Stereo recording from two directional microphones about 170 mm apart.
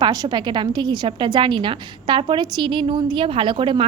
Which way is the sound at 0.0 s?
25° right (ahead or behind).